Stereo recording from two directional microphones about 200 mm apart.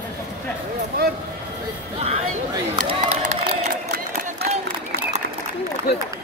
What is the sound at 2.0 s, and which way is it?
Speech, 30° right (ahead or behind).